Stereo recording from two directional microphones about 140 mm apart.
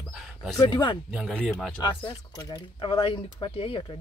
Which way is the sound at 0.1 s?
Centre (ahead or behind).